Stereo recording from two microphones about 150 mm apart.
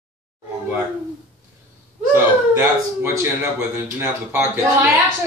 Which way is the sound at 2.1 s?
15° right (ahead or behind).